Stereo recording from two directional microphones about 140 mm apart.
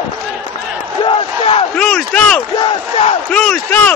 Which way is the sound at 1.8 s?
5° left (ahead or behind).